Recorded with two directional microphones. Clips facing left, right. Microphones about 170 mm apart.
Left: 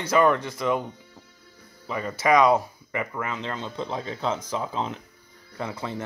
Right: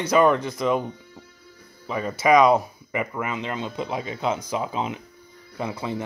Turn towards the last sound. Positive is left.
turn(degrees=-15)  # may be behind; listen again after turning